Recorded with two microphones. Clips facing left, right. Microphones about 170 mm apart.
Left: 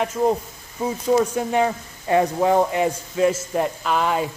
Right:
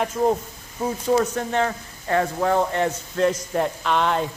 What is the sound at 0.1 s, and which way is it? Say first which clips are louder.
Speech: left 1 dB; centre (ahead or behind).